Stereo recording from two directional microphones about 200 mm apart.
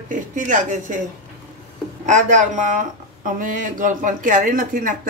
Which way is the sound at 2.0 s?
40° right (ahead or behind).